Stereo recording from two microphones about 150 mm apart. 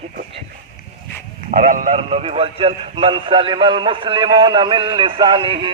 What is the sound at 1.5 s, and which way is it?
Speech, 65° right (ahead or behind).